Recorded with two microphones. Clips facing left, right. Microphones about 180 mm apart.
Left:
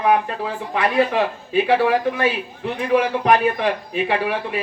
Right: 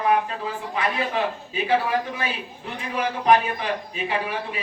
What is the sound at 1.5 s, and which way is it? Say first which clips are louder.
A man's voice: left 6 dB; 70° left (ahead or behind).